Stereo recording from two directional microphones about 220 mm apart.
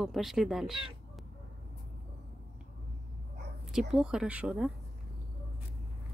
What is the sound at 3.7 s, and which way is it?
Speech, centre (ahead or behind).